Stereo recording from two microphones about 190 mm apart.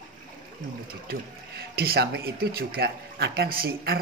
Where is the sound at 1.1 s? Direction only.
55° right (ahead or behind).